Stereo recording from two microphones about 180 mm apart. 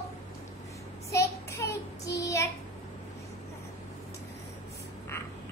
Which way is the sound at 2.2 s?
15° left (ahead or behind).